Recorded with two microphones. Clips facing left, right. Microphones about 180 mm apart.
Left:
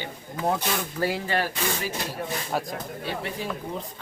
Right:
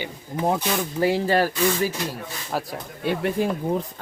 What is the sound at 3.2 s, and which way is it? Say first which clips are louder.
Speech: right 9 dB; 50° right (ahead or behind).